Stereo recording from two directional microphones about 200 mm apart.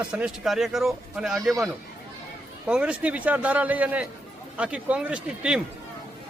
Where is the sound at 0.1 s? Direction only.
5° right (ahead or behind).